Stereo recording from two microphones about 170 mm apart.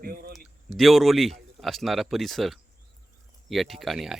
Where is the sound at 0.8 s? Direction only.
Centre (ahead or behind).